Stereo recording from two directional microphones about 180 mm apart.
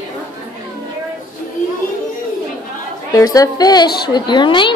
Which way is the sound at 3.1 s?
20° left (ahead or behind).